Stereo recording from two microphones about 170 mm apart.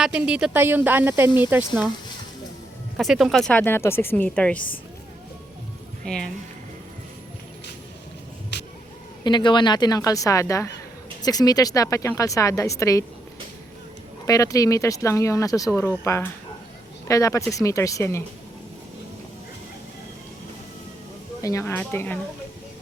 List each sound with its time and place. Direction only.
0.0 s speech: 5° right (ahead or behind)
3.0 s a woman's voice: centre (ahead or behind)
6.1 s speech: 5° left (ahead or behind)
8.5 s vehicle: 90° left
9.2 s speech: 25° left (ahead or behind)
14.3 s a woman's voice: 20° left (ahead or behind)
21.4 s a woman's voice: 15° left (ahead or behind)